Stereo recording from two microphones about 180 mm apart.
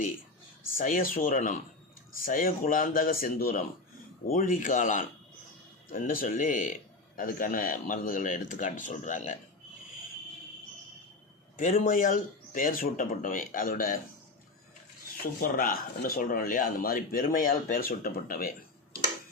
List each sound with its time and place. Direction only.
0.8 s speech: 50° left (ahead or behind)
11.5 s speech: 50° left (ahead or behind)
15.2 s speech: 55° left (ahead or behind)